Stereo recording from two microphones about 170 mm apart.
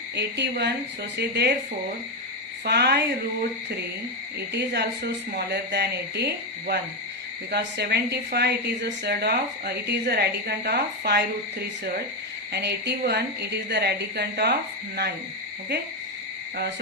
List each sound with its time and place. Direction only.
0.2 s a woman's voice: 90° right
1.2 s a woman's voice: 75° right (ahead or behind)
2.6 s a woman's voice: 75° right (ahead or behind)
4.4 s a woman's voice: 75° right (ahead or behind)
12.5 s a woman's voice: 80° right